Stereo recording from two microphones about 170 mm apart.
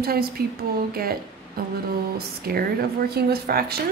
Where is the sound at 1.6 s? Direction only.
65° right (ahead or behind).